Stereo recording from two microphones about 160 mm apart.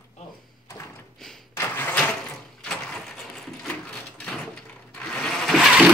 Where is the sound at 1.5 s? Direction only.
10° left (ahead or behind).